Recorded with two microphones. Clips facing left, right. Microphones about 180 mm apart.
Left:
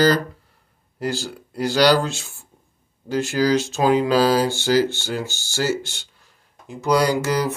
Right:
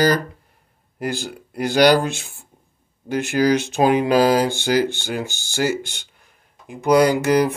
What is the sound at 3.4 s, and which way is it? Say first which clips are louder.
Speech: right 3 dB; 15° right (ahead or behind).